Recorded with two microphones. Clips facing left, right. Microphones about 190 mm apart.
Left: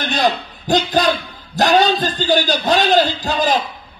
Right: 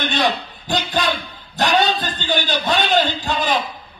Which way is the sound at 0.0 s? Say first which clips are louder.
Left 2 dB; 40° left (ahead or behind).